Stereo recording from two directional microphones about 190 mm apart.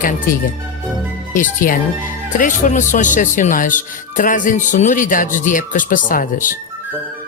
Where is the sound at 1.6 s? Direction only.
50° left (ahead or behind).